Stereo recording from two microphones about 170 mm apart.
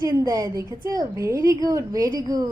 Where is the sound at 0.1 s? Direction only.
20° right (ahead or behind).